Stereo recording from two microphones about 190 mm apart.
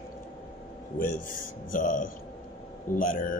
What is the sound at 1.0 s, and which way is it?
Speech, 45° left (ahead or behind).